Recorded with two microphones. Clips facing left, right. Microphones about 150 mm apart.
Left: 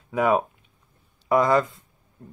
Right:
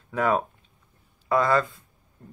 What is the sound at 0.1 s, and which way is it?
Speech, 10° left (ahead or behind).